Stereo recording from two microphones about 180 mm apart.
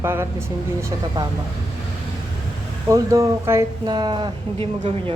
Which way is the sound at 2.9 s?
15° right (ahead or behind).